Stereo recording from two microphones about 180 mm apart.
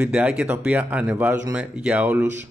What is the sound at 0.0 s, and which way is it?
Speech, 5° right (ahead or behind).